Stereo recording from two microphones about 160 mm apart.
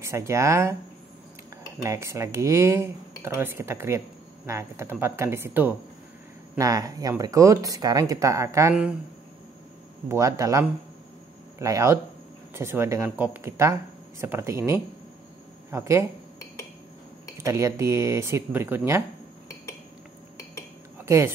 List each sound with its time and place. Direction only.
0.0 s speech: 20° right (ahead or behind)
1.8 s speech: 20° right (ahead or behind)
10.0 s speech: 20° right (ahead or behind)
17.4 s speech: 20° right (ahead or behind)
21.0 s a sound: 20° right (ahead or behind)